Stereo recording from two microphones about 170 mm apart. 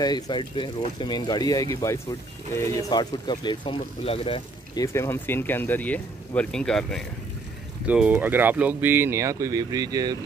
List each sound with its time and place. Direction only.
0.0 s speech: 25° left (ahead or behind)
4.8 s speech: 15° left (ahead or behind)
7.8 s speech: 5° right (ahead or behind)